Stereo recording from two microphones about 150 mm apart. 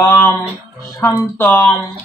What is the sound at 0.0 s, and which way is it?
Music, 15° left (ahead or behind).